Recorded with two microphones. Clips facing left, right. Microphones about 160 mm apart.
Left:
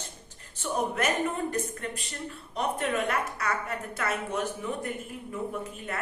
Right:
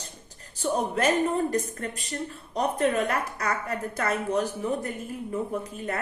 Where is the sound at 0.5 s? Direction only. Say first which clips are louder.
Right 3 dB; 35° right (ahead or behind).